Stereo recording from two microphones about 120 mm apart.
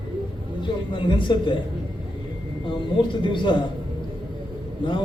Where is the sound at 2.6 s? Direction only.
40° left (ahead or behind).